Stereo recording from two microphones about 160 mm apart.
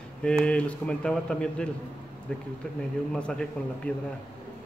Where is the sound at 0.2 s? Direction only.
5° left (ahead or behind).